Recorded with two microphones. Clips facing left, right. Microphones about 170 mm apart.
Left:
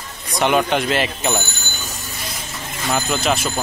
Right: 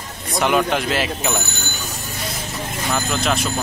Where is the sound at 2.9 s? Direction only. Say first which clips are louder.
Left 2 dB; 5° left (ahead or behind).